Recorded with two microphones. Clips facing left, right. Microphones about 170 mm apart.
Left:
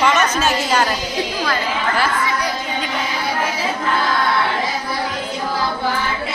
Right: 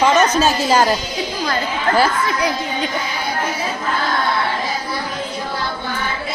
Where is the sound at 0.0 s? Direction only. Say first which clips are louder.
Right 3 dB; 35° right (ahead or behind).